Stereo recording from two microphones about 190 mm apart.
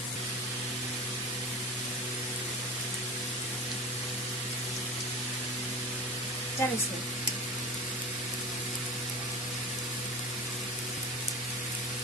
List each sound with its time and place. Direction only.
6.6 s speech: 10° left (ahead or behind)